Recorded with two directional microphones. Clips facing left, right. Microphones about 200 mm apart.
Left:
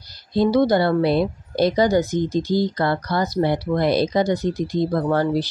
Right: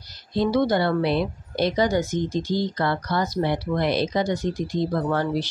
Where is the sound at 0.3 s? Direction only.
40° left (ahead or behind).